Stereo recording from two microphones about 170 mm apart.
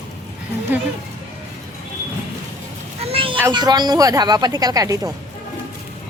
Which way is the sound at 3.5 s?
25° right (ahead or behind).